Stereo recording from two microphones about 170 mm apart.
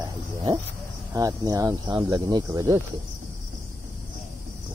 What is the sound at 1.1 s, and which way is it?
Speech, 20° right (ahead or behind).